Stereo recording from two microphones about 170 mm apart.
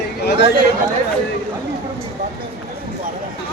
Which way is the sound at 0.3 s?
90° left.